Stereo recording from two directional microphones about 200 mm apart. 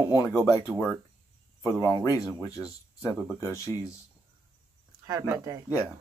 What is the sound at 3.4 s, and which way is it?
Speech, 15° left (ahead or behind).